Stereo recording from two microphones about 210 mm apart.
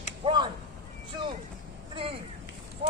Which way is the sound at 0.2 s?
20° right (ahead or behind).